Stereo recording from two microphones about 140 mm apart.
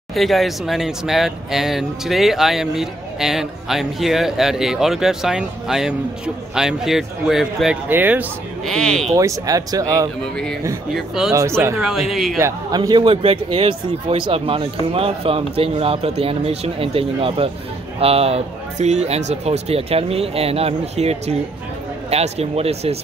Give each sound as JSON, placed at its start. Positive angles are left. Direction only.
{"t": 0.1, "sound": "speech", "side_deg": 0}
{"t": 7.9, "sound": "speech", "side_deg": -10}
{"t": 8.6, "sound": "speech", "side_deg": 5}
{"t": 9.1, "sound": "speech", "side_deg": -25}
{"t": 10.2, "sound": "speech", "side_deg": 5}
{"t": 11.3, "sound": "speech", "side_deg": -20}
{"t": 11.8, "sound": "speech", "side_deg": 0}
{"t": 12.4, "sound": "speech", "side_deg": -20}